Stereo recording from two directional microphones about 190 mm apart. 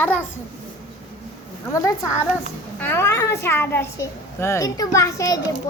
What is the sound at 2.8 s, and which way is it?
A child's voice, 15° left (ahead or behind).